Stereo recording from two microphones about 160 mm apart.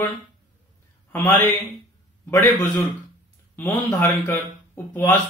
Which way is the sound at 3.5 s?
15° left (ahead or behind).